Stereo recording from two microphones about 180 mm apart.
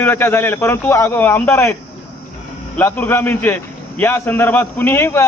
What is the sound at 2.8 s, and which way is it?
A man's voice, 10° left (ahead or behind).